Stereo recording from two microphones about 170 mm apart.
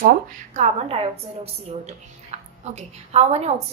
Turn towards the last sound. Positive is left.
turn(degrees=-40)  # may be behind; listen again after turning